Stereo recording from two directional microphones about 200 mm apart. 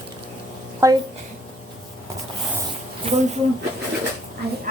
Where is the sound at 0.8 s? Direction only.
15° right (ahead or behind).